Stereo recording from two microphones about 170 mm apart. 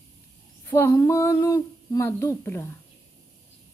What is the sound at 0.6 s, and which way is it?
A woman's voice, 15° left (ahead or behind).